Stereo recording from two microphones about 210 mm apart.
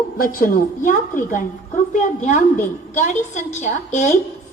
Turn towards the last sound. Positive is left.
turn(degrees=35)  # may be behind; listen again after turning